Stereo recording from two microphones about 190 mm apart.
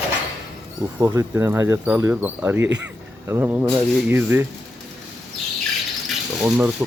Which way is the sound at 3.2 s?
10° right (ahead or behind).